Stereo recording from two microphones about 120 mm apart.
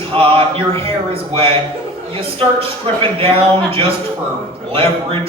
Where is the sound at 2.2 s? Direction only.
50° right (ahead or behind).